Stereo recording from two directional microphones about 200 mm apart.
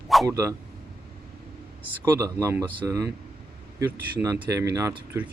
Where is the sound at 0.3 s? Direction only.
15° right (ahead or behind).